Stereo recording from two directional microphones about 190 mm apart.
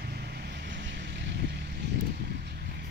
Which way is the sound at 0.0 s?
55° right (ahead or behind).